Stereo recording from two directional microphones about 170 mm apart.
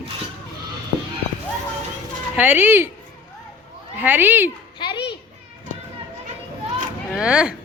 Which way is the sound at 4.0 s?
10° right (ahead or behind).